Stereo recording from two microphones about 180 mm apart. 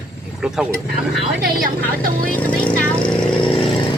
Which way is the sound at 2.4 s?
5° left (ahead or behind).